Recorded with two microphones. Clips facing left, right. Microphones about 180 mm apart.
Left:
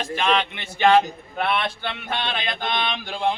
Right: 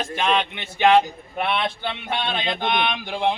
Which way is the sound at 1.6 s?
15° right (ahead or behind).